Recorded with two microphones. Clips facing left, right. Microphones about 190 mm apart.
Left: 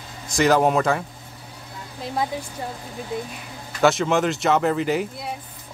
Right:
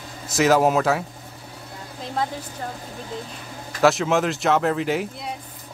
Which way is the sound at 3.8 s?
Centre (ahead or behind).